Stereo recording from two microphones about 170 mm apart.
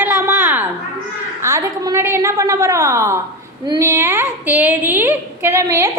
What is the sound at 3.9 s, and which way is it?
A woman's voice, 15° right (ahead or behind).